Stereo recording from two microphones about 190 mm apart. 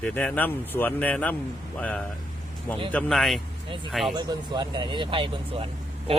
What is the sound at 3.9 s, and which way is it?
Speech, centre (ahead or behind).